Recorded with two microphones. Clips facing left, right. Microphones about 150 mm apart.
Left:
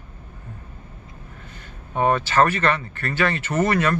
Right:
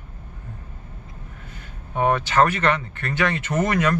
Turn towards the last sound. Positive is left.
turn(degrees=-15)  # may be behind; listen again after turning